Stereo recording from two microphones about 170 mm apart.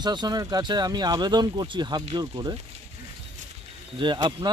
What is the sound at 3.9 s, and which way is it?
Speech, 25° right (ahead or behind).